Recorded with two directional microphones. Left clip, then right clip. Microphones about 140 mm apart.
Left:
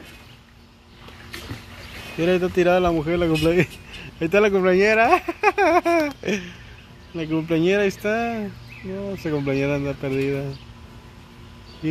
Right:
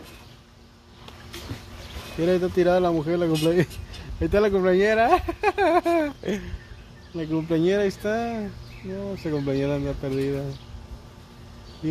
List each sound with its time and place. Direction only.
2.1 s speech: 15° left (ahead or behind)